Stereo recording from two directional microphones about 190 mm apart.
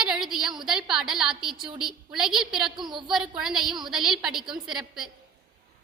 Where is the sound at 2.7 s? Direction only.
25° right (ahead or behind).